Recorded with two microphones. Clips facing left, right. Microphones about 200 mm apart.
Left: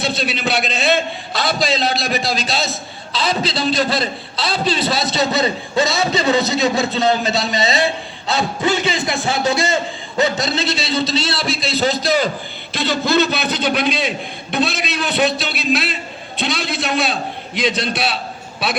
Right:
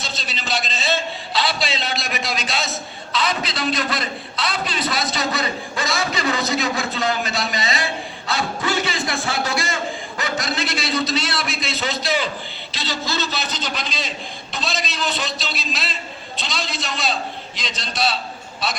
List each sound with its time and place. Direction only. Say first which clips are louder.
0.0 s a man's voice: left 10 dB; 60° left (ahead or behind); by 12.3 s 40° left (ahead or behind)
12.7 s a man's voice: left 10 dB; 55° left (ahead or behind)